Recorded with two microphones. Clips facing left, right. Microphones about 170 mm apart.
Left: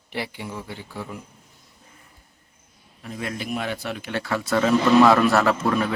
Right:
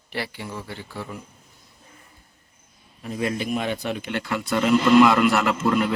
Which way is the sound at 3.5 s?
15° right (ahead or behind).